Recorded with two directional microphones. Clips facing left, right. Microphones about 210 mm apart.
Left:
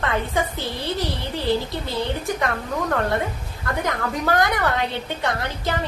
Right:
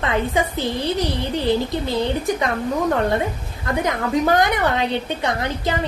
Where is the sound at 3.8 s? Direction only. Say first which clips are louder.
Right 5 dB; 20° right (ahead or behind).